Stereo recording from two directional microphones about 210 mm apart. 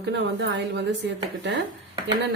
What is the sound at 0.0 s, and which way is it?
Speech, 55° right (ahead or behind).